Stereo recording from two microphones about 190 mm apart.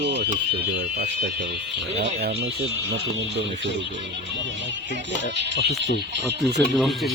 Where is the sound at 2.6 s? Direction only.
70° right (ahead or behind).